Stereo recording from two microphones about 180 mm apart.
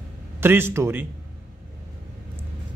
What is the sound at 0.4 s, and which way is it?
Speech, 10° right (ahead or behind).